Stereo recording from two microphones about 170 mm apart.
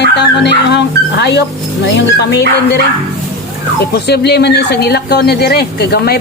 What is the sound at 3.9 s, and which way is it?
Speech, 70° left (ahead or behind).